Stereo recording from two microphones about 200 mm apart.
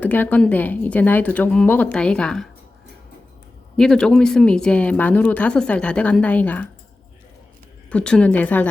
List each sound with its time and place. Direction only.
0.0 s a woman's voice: 10° left (ahead or behind)
3.8 s speech: 5° left (ahead or behind)
7.9 s speech: 5° left (ahead or behind)